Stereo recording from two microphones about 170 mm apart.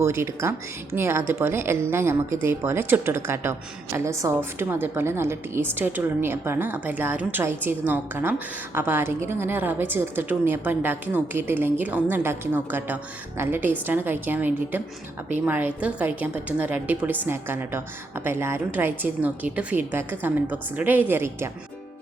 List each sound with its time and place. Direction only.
0.0 s a woman's voice: 15° right (ahead or behind)